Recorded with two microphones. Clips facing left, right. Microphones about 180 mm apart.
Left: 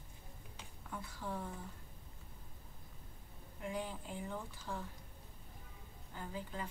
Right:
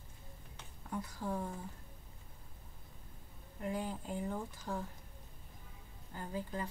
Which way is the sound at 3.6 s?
40° right (ahead or behind).